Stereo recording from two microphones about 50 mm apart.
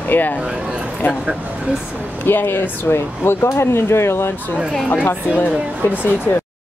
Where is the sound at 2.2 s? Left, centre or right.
Left.